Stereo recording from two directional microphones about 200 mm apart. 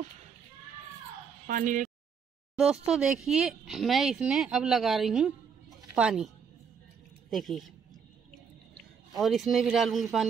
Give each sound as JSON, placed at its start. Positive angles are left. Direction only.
{"t": 1.5, "sound": "speech", "side_deg": -40}
{"t": 2.5, "sound": "speech", "side_deg": -5}
{"t": 9.1, "sound": "speech", "side_deg": 0}